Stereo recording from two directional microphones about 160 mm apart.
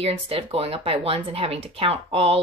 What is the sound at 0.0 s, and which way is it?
A woman's voice, 35° right (ahead or behind).